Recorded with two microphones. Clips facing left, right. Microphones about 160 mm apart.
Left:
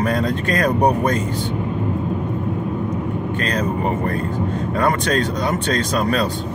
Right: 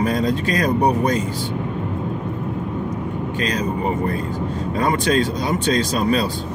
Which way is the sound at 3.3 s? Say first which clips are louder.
Even; 55° left (ahead or behind).